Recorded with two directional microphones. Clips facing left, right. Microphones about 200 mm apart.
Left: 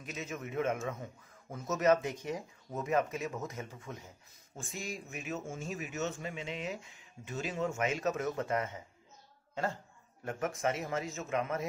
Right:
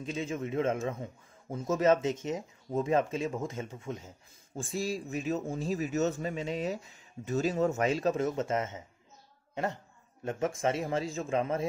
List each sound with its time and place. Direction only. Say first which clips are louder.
0.0 s speech: right 7 dB; 30° right (ahead or behind)
10.2 s speech: right 4 dB; 25° right (ahead or behind)